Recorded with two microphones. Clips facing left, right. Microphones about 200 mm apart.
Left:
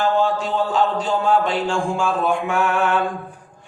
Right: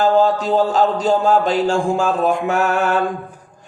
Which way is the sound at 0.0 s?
40° right (ahead or behind).